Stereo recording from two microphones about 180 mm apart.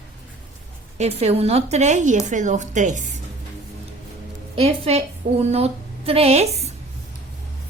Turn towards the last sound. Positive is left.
turn(degrees=-35)  # may be behind; listen again after turning